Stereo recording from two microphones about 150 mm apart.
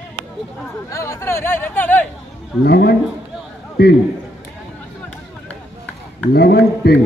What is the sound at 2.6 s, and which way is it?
Speech, 90° left.